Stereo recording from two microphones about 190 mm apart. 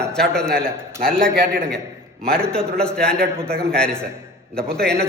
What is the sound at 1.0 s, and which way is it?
A man's voice, 5° left (ahead or behind).